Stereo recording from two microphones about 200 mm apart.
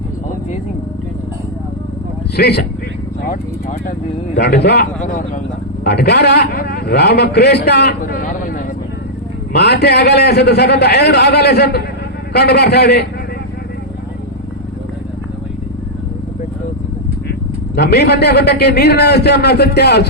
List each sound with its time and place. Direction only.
2.3 s a man's voice: 55° left (ahead or behind)
4.4 s a man's voice: 55° left (ahead or behind)
17.7 s a man's voice: 55° left (ahead or behind)